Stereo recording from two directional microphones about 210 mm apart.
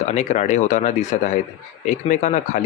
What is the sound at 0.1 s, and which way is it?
Speech, 35° left (ahead or behind).